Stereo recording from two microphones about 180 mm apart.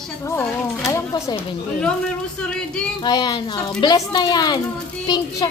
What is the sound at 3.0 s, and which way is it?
Speech, 25° left (ahead or behind).